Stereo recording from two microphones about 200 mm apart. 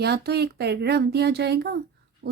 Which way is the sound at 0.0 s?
55° right (ahead or behind).